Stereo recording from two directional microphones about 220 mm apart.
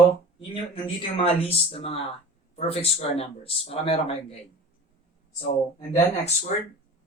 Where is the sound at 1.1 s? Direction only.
25° left (ahead or behind).